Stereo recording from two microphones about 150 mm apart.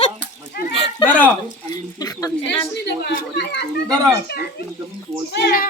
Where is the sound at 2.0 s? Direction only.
25° left (ahead or behind).